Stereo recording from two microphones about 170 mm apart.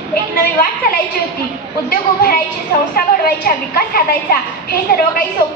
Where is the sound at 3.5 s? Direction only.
60° left (ahead or behind).